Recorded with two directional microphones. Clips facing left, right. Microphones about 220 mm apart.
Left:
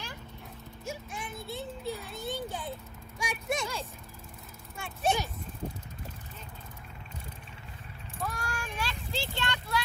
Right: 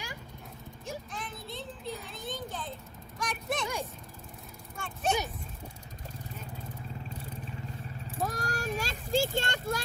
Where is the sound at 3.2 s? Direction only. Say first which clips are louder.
Left 1 dB; 10° left (ahead or behind).